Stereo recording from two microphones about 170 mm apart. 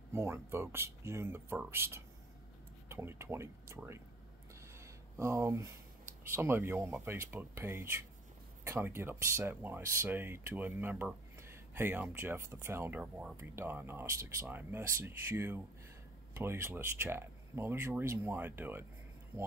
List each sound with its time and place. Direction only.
0.1 s speech: 15° right (ahead or behind)
4.6 s a sound: 15° right (ahead or behind)
6.3 s speech: 15° right (ahead or behind)